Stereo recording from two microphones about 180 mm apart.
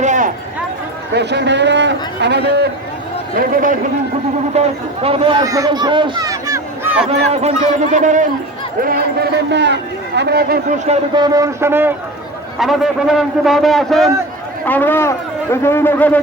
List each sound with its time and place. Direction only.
0.0 s a sound: 40° right (ahead or behind)
1.1 s a man's voice: 70° right (ahead or behind)
3.3 s speech: 50° right (ahead or behind)
4.6 s a man's voice: 35° right (ahead or behind)
5.5 s speech: 20° right (ahead or behind)
7.4 s speech: 40° right (ahead or behind)
8.8 s speech: 60° right (ahead or behind)
11.1 s a man's voice: 20° right (ahead or behind)
12.5 s a man's voice: centre (ahead or behind)